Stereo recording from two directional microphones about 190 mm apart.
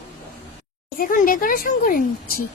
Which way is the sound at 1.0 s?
50° left (ahead or behind).